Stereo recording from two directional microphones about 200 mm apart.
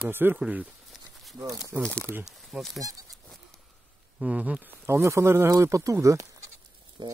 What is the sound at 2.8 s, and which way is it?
Speech, 20° right (ahead or behind).